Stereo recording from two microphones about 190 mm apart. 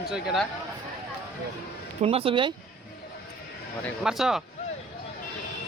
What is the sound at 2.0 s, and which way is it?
Speech, 30° right (ahead or behind).